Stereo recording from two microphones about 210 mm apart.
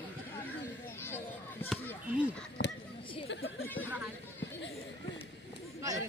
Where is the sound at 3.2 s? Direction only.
60° left (ahead or behind).